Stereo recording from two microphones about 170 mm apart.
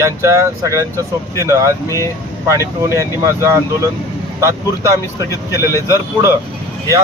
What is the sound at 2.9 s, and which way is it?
Speech, 20° left (ahead or behind).